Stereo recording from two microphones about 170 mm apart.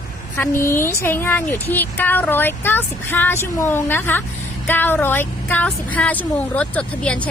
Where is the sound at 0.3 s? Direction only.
15° left (ahead or behind).